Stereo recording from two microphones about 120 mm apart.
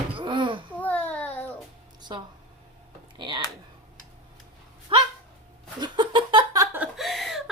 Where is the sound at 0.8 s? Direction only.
15° left (ahead or behind).